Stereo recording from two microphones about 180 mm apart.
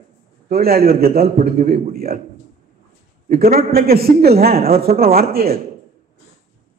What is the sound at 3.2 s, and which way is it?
A man's voice, 55° right (ahead or behind).